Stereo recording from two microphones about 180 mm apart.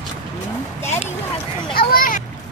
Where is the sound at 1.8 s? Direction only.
50° left (ahead or behind).